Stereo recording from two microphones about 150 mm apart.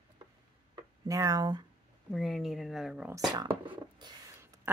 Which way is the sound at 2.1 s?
Centre (ahead or behind).